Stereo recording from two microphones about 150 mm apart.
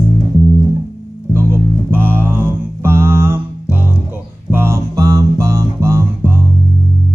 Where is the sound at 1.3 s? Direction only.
15° right (ahead or behind).